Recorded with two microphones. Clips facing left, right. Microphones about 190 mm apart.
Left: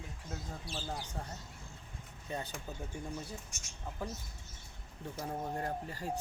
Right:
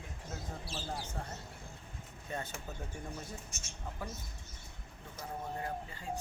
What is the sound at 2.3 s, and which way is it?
Speech, 15° left (ahead or behind).